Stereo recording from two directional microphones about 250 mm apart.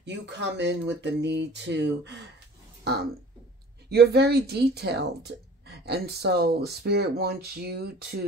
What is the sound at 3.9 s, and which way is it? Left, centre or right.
A woman's voice, right.